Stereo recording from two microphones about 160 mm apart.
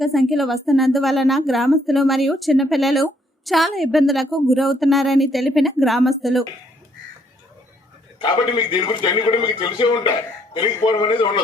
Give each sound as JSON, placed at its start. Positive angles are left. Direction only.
{"t": 0.0, "sound": "a woman's voice", "side_deg": 0}
{"t": 8.2, "sound": "a man's voice", "side_deg": 30}